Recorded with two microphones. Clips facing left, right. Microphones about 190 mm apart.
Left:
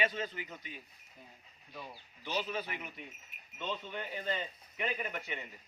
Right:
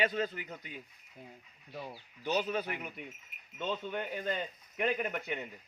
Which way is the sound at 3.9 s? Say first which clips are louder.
Right 3 dB; 55° right (ahead or behind).